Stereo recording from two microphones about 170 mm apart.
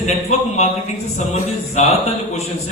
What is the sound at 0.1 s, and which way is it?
Speech, 40° left (ahead or behind).